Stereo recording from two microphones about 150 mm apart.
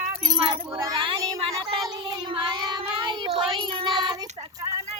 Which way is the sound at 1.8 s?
30° right (ahead or behind).